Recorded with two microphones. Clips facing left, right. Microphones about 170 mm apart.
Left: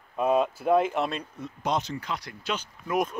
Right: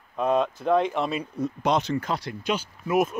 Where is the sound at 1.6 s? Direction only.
75° right (ahead or behind).